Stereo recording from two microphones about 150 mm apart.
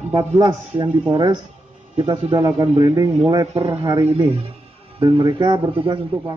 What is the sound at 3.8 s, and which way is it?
A man's voice, 25° right (ahead or behind).